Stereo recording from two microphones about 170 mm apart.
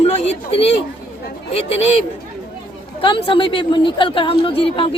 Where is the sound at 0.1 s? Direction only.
40° left (ahead or behind).